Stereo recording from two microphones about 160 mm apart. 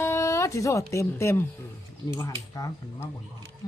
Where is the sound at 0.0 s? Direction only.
15° left (ahead or behind).